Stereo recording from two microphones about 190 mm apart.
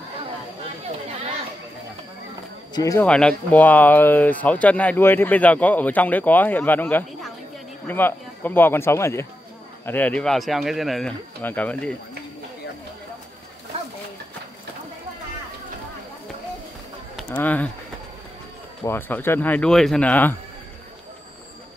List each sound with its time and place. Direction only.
2.7 s speech: 15° left (ahead or behind)
3.1 s speech: 5° left (ahead or behind)
17.2 s speech: 5° left (ahead or behind)
18.9 s speech: 10° left (ahead or behind)